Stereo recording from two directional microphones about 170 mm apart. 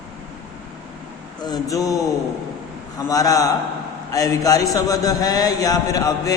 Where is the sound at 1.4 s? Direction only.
25° left (ahead or behind).